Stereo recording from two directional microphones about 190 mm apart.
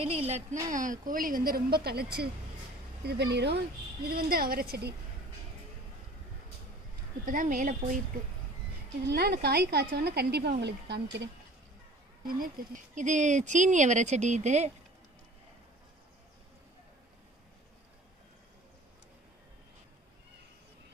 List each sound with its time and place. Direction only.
0.0 s a woman's voice: 35° right (ahead or behind); by 3.6 s 60° right (ahead or behind)
4.1 s a woman's voice: 50° right (ahead or behind)
7.2 s a woman's voice: 45° right (ahead or behind)
9.0 s a woman's voice: 55° right (ahead or behind)
12.3 s speech: 45° right (ahead or behind)